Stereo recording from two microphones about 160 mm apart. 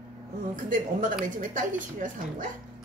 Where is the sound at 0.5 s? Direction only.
55° right (ahead or behind).